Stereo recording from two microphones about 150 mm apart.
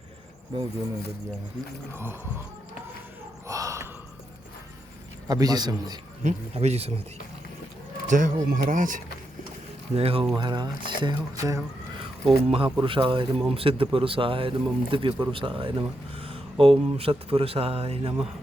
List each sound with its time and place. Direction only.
3.4 s a sound: 20° right (ahead or behind)
5.3 s a man's voice: 25° right (ahead or behind)
6.2 s speech: 45° right (ahead or behind)
8.0 s speech: 55° right (ahead or behind)
9.9 s a man's voice: 40° right (ahead or behind); by 11.6 s 20° right (ahead or behind)
12.3 s speech: 35° right (ahead or behind)